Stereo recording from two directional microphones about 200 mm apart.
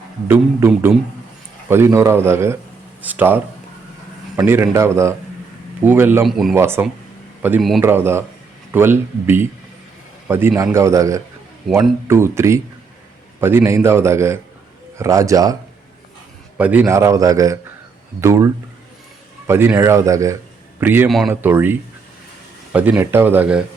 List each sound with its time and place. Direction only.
0.3 s a man's voice: 10° right (ahead or behind)
6.6 s a man's voice: 10° right (ahead or behind)
16.6 s a man's voice: 10° right (ahead or behind)